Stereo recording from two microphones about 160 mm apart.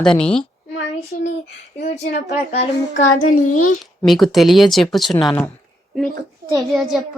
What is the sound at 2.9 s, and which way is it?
Child singing, 55° left (ahead or behind).